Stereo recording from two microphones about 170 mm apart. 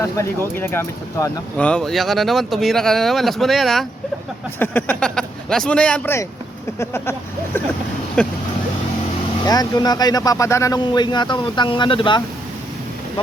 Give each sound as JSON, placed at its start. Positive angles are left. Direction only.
{"t": 0.0, "sound": "speech", "side_deg": 15}
{"t": 9.5, "sound": "speech", "side_deg": 25}